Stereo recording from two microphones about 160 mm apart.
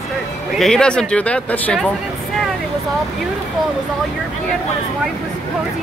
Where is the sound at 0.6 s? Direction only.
5° left (ahead or behind).